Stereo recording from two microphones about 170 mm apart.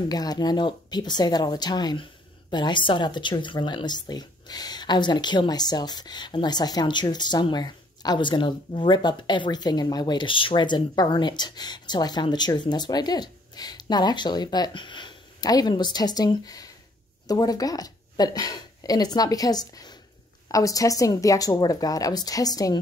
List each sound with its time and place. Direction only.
0.1 s speech: 25° left (ahead or behind)